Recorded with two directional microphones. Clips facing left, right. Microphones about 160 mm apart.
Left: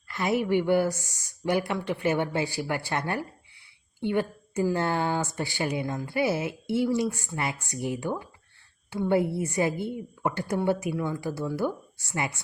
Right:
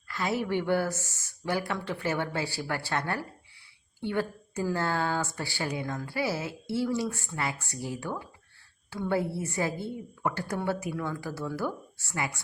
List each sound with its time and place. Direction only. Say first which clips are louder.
0.1 s a woman's voice: left 4 dB; 20° left (ahead or behind)